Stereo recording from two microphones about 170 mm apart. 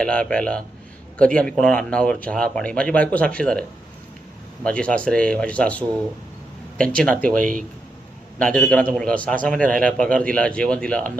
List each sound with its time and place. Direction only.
0.0 s a man's voice: 5° left (ahead or behind)
4.6 s a man's voice: 5° left (ahead or behind)
7.3 s a man's voice: 50° right (ahead or behind)
8.4 s a man's voice: 5° left (ahead or behind)